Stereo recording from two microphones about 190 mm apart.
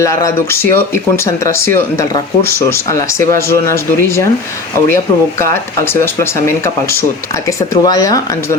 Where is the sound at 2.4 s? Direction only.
55° right (ahead or behind).